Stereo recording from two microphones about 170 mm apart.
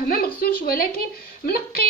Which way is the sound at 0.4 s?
60° left (ahead or behind).